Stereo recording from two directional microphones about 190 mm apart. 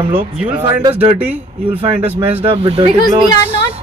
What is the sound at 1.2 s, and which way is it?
Speech, 10° right (ahead or behind).